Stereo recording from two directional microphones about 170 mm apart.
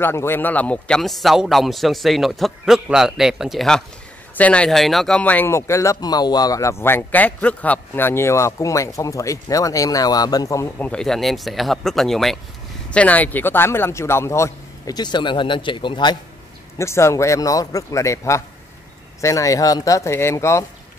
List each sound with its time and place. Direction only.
0.0 s speech: 15° left (ahead or behind)
10.9 s speech: 5° left (ahead or behind); by 16.2 s 25° left (ahead or behind)
16.7 s speech: 15° left (ahead or behind)